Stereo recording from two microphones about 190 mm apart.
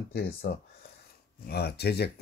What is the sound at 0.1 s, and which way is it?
Speech, 55° left (ahead or behind).